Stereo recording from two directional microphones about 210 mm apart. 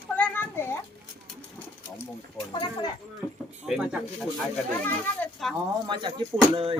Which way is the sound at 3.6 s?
5° right (ahead or behind).